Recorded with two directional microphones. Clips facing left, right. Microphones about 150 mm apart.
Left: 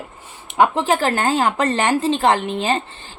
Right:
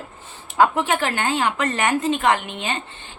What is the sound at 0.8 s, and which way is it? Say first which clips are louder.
A woman's voice: left 4 dB; 35° left (ahead or behind).